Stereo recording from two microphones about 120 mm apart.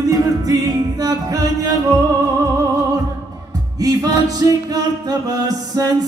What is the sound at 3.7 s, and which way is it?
Music, 30° right (ahead or behind).